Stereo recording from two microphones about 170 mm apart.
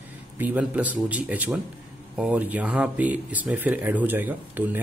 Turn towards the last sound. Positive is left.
turn(degrees=-10)  # may be behind; listen again after turning